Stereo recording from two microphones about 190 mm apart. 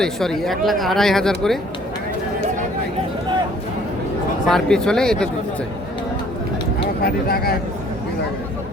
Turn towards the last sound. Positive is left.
turn(degrees=55)  # may be behind; listen again after turning